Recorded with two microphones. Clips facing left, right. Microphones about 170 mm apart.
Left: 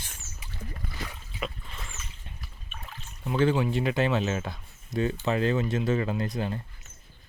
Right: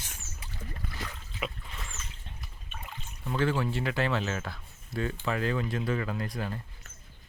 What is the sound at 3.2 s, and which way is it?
Speech, 20° left (ahead or behind).